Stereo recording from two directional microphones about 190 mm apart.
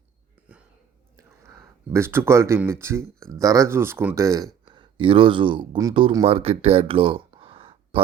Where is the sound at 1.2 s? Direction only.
15° right (ahead or behind).